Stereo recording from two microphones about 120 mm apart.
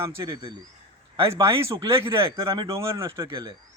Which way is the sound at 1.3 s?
25° right (ahead or behind).